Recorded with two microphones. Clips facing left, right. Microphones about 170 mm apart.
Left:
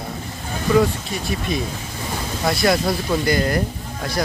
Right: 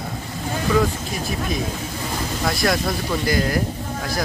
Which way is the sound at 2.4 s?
Centre (ahead or behind).